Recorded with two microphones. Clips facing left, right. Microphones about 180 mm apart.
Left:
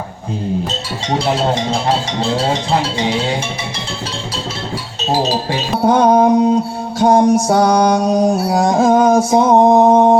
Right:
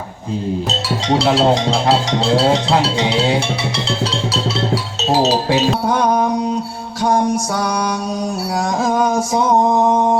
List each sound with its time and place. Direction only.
1.2 s music: 80° right
5.8 s mantra: 25° left (ahead or behind)